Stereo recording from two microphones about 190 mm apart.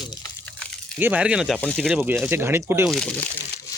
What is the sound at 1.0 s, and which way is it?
Speech, 5° right (ahead or behind).